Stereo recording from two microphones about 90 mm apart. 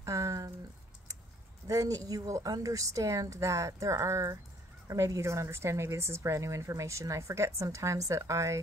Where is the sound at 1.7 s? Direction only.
40° right (ahead or behind).